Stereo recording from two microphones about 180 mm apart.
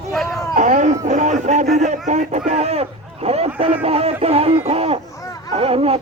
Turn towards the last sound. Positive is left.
turn(degrees=-35)  # may be behind; listen again after turning